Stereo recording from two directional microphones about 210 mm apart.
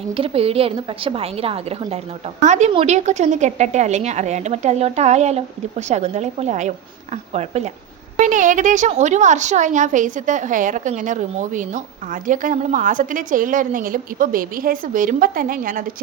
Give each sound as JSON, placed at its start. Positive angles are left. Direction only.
{"t": 0.1, "sound": "a woman's voice", "side_deg": -25}